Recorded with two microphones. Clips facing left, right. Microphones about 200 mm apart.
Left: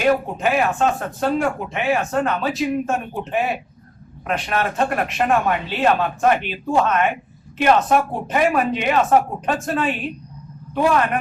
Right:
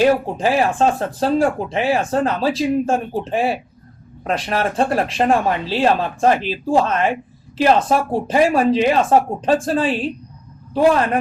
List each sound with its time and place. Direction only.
0.0 s a man's voice: 30° right (ahead or behind)